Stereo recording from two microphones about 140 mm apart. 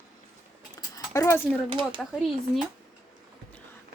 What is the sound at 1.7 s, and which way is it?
Speech, 35° right (ahead or behind).